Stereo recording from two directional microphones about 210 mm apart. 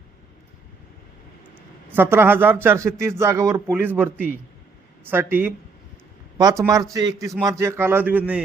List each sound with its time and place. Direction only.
1.9 s a man's voice: 10° right (ahead or behind)